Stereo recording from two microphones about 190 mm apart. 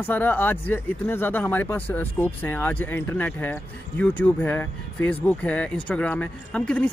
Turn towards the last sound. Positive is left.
turn(degrees=5)  # may be behind; listen again after turning